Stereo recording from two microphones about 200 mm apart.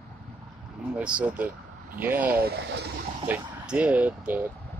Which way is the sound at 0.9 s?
5° right (ahead or behind).